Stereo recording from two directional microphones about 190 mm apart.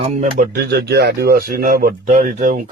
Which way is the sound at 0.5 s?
60° right (ahead or behind).